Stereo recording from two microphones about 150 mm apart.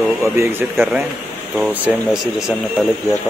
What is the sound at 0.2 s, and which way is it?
Speech, 15° right (ahead or behind).